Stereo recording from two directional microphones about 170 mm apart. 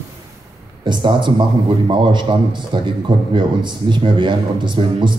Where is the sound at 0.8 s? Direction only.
25° right (ahead or behind).